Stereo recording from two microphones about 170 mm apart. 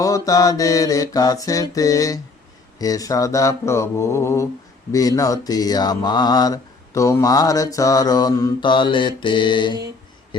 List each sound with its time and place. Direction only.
0.0 s mantra: 20° left (ahead or behind)